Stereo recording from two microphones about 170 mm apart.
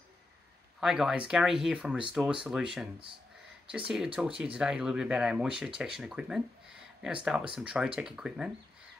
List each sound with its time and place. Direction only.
0.7 s speech: 5° right (ahead or behind)